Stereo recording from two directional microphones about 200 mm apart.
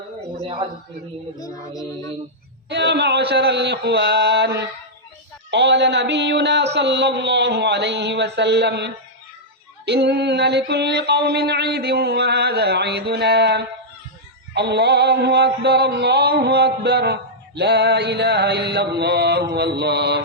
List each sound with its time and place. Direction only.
0.4 s a woman's voice: 25° right (ahead or behind)
2.6 s mantra: 60° right (ahead or behind)